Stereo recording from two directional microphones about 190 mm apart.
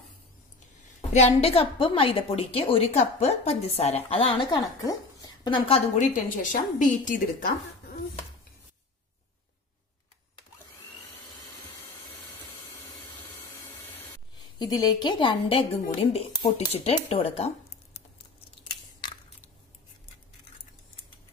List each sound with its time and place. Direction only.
1.1 s a woman's voice: 35° left (ahead or behind)
5.9 s a woman's voice: 45° left (ahead or behind)
14.6 s a woman's voice: 20° left (ahead or behind)